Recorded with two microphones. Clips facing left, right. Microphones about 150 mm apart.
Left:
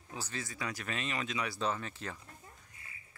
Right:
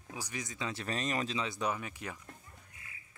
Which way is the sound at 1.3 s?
20° right (ahead or behind).